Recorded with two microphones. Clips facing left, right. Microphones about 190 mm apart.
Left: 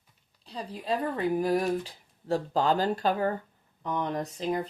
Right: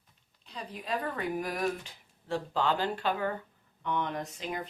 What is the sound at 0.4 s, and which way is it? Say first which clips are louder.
Speech: left 6 dB; 30° left (ahead or behind).